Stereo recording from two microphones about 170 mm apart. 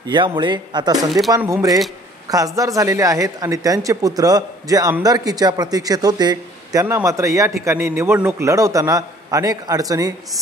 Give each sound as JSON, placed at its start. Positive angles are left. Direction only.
{"t": 0.0, "sound": "a man's voice", "side_deg": -25}